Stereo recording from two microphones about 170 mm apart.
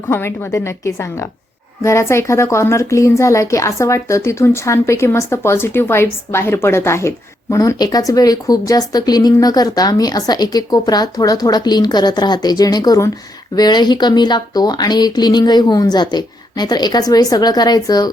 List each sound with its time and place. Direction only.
0.1 s speech: 15° left (ahead or behind)